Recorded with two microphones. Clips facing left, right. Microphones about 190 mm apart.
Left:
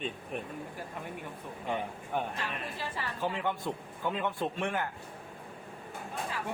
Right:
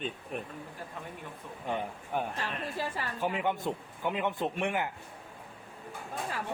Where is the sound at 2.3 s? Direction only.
40° right (ahead or behind).